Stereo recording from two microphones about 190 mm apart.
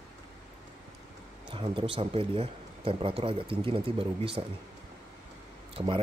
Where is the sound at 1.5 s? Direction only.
30° right (ahead or behind).